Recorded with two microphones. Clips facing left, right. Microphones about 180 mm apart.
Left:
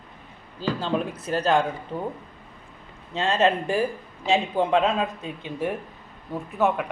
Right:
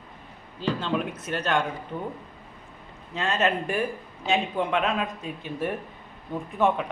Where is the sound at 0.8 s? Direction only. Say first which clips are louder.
Left 2 dB; 35° left (ahead or behind).